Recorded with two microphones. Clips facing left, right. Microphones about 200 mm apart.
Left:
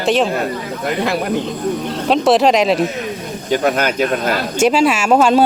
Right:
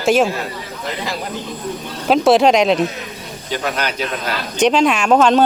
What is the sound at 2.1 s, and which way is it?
Speech, centre (ahead or behind).